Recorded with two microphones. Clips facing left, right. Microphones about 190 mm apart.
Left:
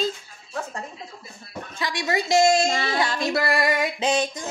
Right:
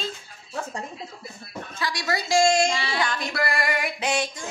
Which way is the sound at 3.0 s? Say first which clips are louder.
Left 3 dB; 25° left (ahead or behind).